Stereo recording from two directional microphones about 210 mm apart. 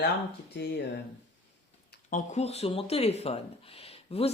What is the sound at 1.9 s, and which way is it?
Speech, 40° left (ahead or behind).